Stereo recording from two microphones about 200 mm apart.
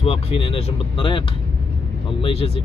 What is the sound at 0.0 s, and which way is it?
Speech, 30° left (ahead or behind).